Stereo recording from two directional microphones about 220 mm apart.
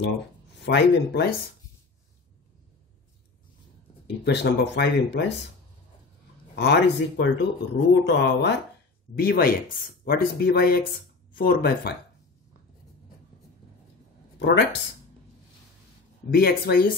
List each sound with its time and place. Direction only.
0.7 s speech: 50° left (ahead or behind)
4.2 s speech: 50° left (ahead or behind)
6.5 s speech: 50° left (ahead or behind)
14.4 s speech: 50° left (ahead or behind)
16.3 s speech: 45° left (ahead or behind)